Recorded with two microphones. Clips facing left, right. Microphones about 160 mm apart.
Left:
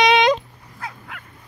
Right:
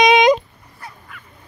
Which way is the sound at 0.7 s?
80° left.